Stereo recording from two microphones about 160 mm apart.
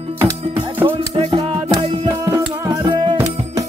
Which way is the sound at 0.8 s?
35° right (ahead or behind).